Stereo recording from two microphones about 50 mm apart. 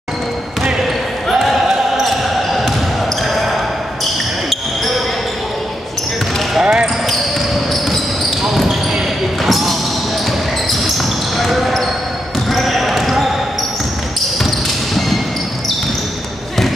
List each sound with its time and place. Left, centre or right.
1.3 s basketball bounce: centre
6.6 s basketball bounce: centre
7.7 s basketball bounce: centre
10.8 s basketball bounce: centre
12.4 s a sound: centre